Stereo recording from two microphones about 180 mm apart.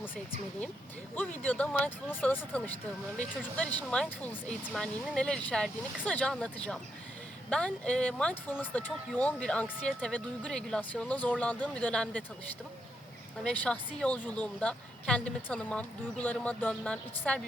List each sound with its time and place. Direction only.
1.4 s speech: 5° left (ahead or behind)
13.4 s speech: 5° left (ahead or behind)